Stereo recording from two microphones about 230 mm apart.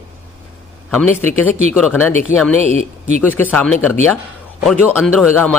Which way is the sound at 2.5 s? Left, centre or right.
Right.